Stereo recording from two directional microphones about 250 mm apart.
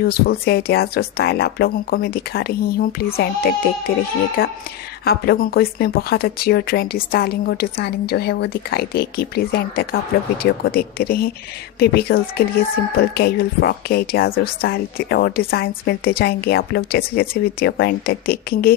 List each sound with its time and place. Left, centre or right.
0.0 s a woman's voice: left